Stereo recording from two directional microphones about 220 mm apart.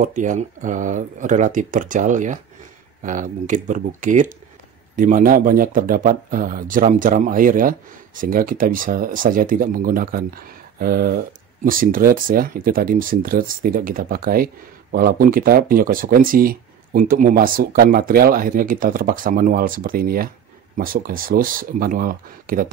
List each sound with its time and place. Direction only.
0.0 s speech: 35° right (ahead or behind)